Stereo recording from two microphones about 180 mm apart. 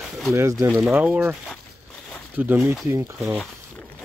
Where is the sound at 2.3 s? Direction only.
10° right (ahead or behind).